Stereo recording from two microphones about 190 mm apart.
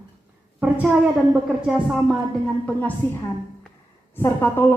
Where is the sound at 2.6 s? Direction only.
10° left (ahead or behind).